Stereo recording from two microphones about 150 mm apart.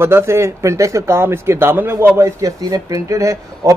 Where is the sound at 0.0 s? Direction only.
15° right (ahead or behind).